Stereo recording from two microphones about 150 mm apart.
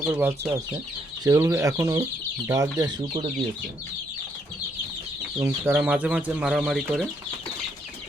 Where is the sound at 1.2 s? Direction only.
20° right (ahead or behind).